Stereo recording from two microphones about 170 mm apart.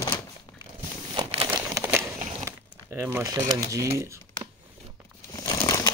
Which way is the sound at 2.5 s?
15° right (ahead or behind).